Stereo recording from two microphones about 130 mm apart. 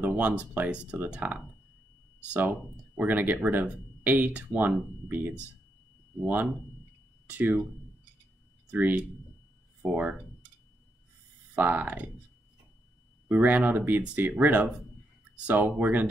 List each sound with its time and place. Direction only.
0.0 s speech: 10° right (ahead or behind)
3.0 s speech: 15° right (ahead or behind)
8.6 s speech: 15° right (ahead or behind)
9.8 s speech: centre (ahead or behind)
11.5 s speech: 15° right (ahead or behind)
13.3 s speech: 15° right (ahead or behind)